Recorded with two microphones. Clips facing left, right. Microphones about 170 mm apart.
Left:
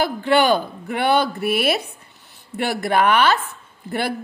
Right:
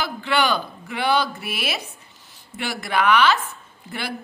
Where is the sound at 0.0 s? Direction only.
50° left (ahead or behind).